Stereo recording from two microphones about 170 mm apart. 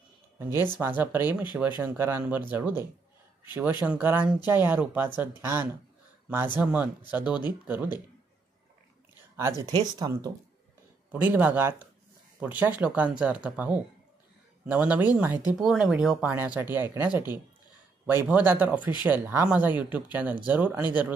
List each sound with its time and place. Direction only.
0.4 s speech: 15° right (ahead or behind)
9.4 s speech: 15° right (ahead or behind)
11.1 s speech: 10° right (ahead or behind)
18.2 s speech: 10° right (ahead or behind)